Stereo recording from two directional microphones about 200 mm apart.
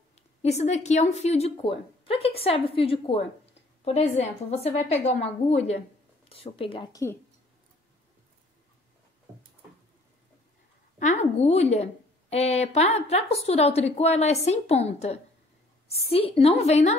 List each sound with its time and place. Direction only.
0.4 s a woman's voice: 35° left (ahead or behind)
11.0 s a woman's voice: 35° left (ahead or behind)